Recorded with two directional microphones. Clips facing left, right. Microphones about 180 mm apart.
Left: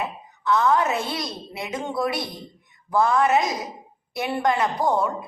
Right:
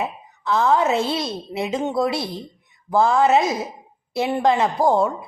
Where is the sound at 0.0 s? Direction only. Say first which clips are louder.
Right 2 dB; 25° right (ahead or behind).